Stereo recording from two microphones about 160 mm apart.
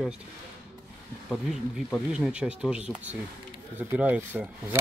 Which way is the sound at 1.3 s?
Centre (ahead or behind).